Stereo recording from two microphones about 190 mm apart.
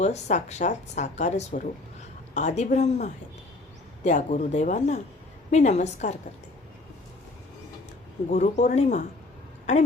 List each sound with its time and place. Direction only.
0.0 s speech: 40° left (ahead or behind)
8.3 s speech: 40° left (ahead or behind)